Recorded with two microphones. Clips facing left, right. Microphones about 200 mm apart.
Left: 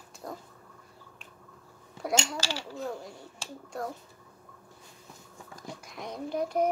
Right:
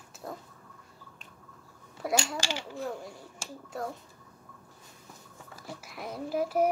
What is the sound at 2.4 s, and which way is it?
Speech, 15° right (ahead or behind).